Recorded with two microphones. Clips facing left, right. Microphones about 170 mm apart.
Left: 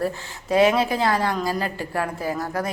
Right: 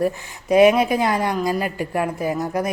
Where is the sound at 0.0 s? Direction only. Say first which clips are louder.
Right 4 dB; 15° right (ahead or behind).